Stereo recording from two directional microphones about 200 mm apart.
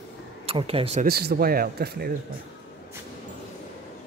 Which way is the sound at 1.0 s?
50° right (ahead or behind).